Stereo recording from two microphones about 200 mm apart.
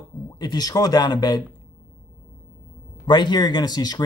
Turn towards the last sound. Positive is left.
turn(degrees=20)  # may be behind; listen again after turning